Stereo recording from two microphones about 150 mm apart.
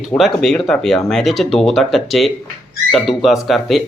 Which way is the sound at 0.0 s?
Centre (ahead or behind).